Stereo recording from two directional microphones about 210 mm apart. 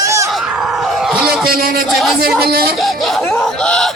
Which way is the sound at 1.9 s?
Centre (ahead or behind).